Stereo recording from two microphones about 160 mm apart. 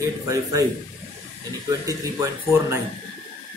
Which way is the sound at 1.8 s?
20° right (ahead or behind).